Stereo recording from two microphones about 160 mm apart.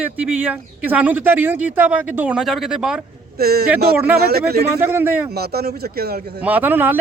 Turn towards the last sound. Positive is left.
turn(degrees=-10)  # may be behind; listen again after turning